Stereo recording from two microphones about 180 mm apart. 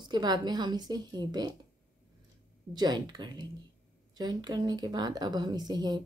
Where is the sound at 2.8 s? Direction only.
25° right (ahead or behind).